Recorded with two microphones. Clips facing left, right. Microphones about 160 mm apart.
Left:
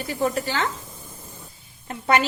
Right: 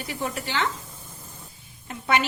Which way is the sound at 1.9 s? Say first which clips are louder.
Left 3 dB; 40° left (ahead or behind).